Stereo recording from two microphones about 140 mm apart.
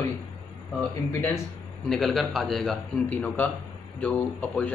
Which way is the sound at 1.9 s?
Centre (ahead or behind).